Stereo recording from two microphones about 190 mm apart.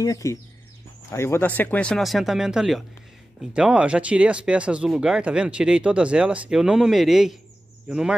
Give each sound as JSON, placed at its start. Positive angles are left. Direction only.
{"t": 0.0, "sound": "speech", "side_deg": 15}